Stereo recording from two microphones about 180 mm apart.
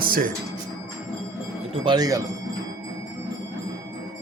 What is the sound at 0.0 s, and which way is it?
Music, 50° right (ahead or behind).